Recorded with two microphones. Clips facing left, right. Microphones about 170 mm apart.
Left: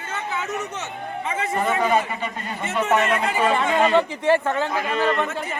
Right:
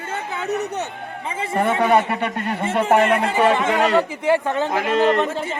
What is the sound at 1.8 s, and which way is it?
Speech, 65° right (ahead or behind).